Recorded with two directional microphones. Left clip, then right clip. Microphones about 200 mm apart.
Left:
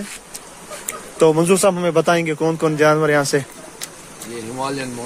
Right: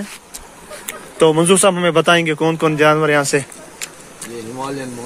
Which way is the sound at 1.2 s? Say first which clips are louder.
Right 2 dB; 5° right (ahead or behind).